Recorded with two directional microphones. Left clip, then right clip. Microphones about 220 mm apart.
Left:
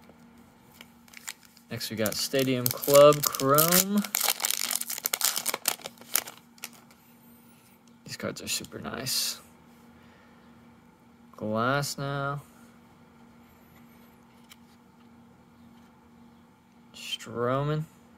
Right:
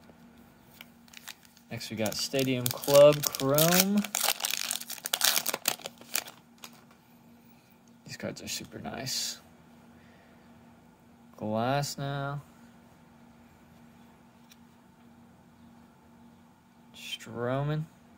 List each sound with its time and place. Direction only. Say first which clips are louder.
1.7 s speech: left 3 dB; 20° left (ahead or behind)
3.2 s speech: left 3 dB; 5° left (ahead or behind)
3.8 s crumpling: left 1 dB; 10° left (ahead or behind)
5.2 s a sound: right 3 dB; centre (ahead or behind)
8.0 s speech: left 3 dB; 15° left (ahead or behind)
11.3 s speech: left 2 dB; 10° left (ahead or behind)
16.9 s a sound: left 4 dB; 15° left (ahead or behind)